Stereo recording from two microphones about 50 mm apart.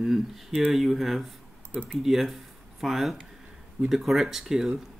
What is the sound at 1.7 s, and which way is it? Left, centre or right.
Speech, right.